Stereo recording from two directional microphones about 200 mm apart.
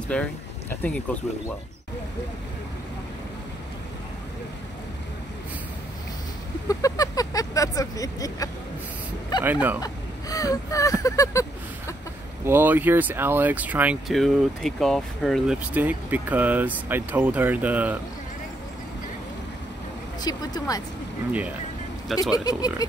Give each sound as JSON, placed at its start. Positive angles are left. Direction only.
{"t": 0.1, "sound": "speech", "side_deg": 5}
{"t": 6.7, "sound": "speech", "side_deg": 15}
{"t": 9.4, "sound": "speech", "side_deg": -10}
{"t": 9.8, "sound": "speech", "side_deg": 20}
{"t": 12.4, "sound": "speech", "side_deg": -10}
{"t": 20.2, "sound": "speech", "side_deg": 20}
{"t": 21.3, "sound": "speech", "side_deg": -5}
{"t": 22.3, "sound": "speech", "side_deg": 20}